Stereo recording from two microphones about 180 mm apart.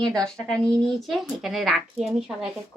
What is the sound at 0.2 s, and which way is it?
Speech, 5° left (ahead or behind).